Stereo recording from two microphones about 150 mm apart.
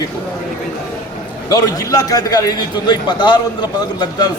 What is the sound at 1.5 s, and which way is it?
A man's voice, 25° left (ahead or behind).